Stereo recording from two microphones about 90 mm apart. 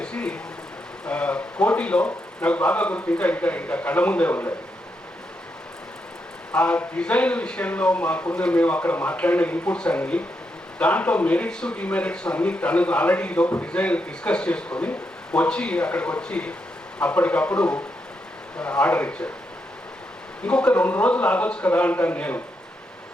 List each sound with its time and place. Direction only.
0.0 s a sound: 10° left (ahead or behind)
1.0 s speech: 10° left (ahead or behind)
6.5 s speech: 15° left (ahead or behind)
20.4 s speech: 15° left (ahead or behind)